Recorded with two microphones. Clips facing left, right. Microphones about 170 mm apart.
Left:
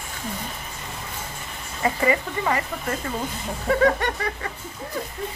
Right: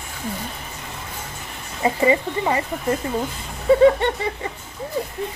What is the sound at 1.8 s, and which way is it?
Speech, 20° right (ahead or behind).